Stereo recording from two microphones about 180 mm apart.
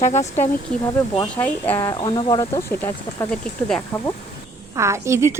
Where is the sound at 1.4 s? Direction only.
10° left (ahead or behind).